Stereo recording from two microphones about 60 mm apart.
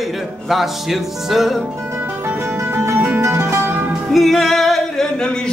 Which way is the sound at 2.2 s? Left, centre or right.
Right.